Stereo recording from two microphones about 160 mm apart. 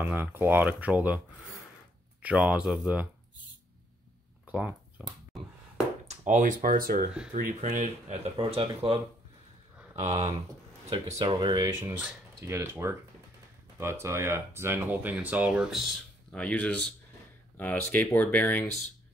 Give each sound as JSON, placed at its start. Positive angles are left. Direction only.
{"t": 0.0, "sound": "speech", "side_deg": -10}
{"t": 2.2, "sound": "speech", "side_deg": -5}
{"t": 4.5, "sound": "a sound", "side_deg": -5}
{"t": 6.0, "sound": "speech", "side_deg": -50}
{"t": 10.9, "sound": "speech", "side_deg": -20}
{"t": 11.8, "sound": "speech", "side_deg": -15}
{"t": 16.3, "sound": "speech", "side_deg": 5}